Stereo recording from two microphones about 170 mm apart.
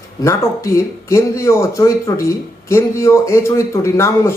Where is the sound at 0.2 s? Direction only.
20° left (ahead or behind).